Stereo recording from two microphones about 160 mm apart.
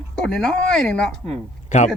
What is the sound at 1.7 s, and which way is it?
Speech, 50° left (ahead or behind).